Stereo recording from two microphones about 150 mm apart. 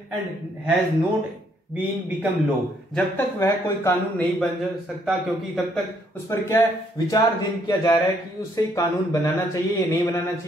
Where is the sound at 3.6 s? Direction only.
15° left (ahead or behind).